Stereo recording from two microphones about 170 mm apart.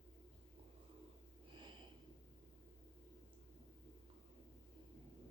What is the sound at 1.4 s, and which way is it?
Sniff, 30° right (ahead or behind).